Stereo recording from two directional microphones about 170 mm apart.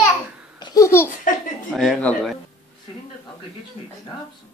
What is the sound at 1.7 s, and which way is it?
Speech, centre (ahead or behind).